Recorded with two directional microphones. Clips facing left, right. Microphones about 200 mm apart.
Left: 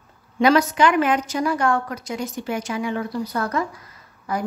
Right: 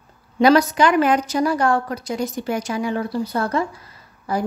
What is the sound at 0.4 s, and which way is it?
A woman's voice, 35° right (ahead or behind).